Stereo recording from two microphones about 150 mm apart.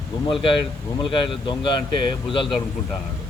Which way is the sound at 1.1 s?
35° left (ahead or behind).